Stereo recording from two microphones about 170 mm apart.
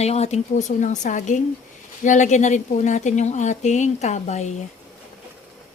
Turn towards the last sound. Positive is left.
turn(degrees=40)  # may be behind; listen again after turning